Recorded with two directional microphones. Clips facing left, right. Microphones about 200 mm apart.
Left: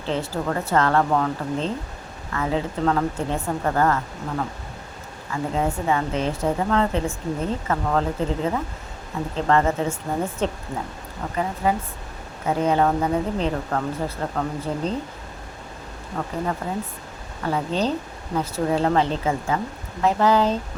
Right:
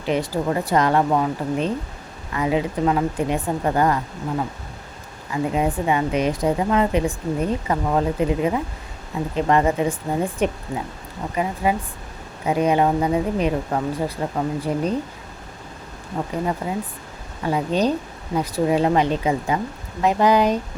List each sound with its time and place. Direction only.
0.0 s a woman's voice: 15° right (ahead or behind)
16.1 s a woman's voice: 15° right (ahead or behind)